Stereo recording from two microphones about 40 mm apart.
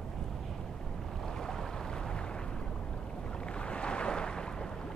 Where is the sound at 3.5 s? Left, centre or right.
Left.